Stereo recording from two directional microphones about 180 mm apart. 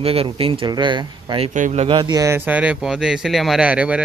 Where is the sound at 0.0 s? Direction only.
30° right (ahead or behind).